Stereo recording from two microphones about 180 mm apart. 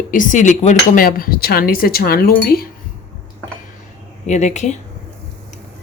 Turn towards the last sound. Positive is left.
turn(degrees=40)  # may be behind; listen again after turning